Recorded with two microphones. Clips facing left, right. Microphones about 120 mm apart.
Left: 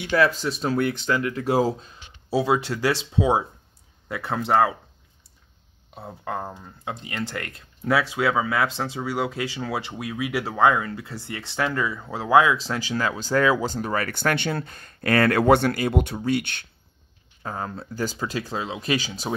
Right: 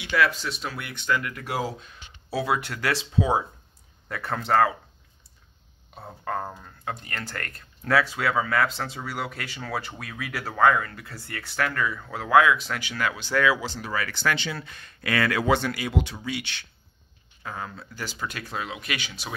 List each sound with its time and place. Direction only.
0.0 s speech: 35° left (ahead or behind); by 4.7 s 15° left (ahead or behind)
5.9 s speech: 15° left (ahead or behind); by 16.6 s 50° left (ahead or behind)
17.4 s speech: 40° left (ahead or behind)
18.2 s speech: 30° left (ahead or behind)